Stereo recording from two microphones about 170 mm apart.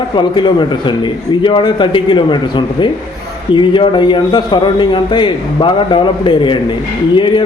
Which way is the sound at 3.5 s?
25° left (ahead or behind).